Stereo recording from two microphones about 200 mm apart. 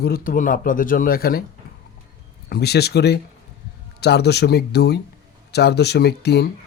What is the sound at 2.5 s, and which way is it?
Speech, 55° left (ahead or behind).